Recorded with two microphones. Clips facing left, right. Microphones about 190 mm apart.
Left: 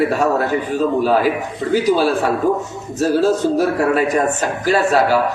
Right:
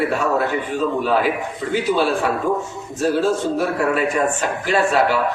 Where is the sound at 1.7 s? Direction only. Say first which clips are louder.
Left 4 dB; 40° left (ahead or behind).